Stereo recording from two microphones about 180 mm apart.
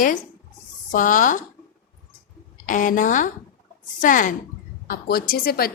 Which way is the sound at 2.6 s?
45° left (ahead or behind).